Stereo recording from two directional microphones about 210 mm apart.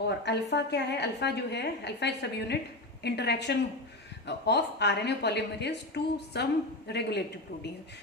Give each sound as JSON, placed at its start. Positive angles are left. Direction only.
{"t": 0.0, "sound": "a woman's voice", "side_deg": 55}